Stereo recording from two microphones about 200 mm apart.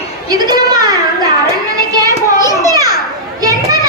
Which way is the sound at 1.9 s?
15° right (ahead or behind).